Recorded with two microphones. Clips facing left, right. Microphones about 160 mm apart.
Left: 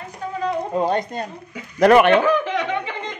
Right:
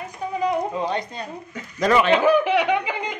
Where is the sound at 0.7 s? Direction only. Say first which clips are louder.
Left 5 dB; 45° left (ahead or behind).